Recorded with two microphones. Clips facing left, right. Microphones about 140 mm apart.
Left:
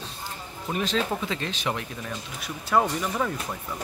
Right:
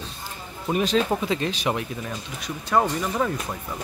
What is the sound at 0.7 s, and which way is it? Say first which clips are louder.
Speech: right 5 dB; 15° right (ahead or behind).